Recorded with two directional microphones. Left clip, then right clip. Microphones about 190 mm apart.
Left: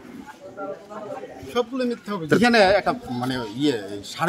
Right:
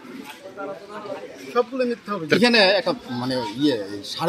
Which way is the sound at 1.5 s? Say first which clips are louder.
Right 2 dB; 35° left (ahead or behind).